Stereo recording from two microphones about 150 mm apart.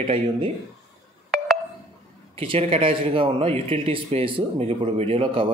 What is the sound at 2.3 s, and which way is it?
A man's voice, 40° right (ahead or behind).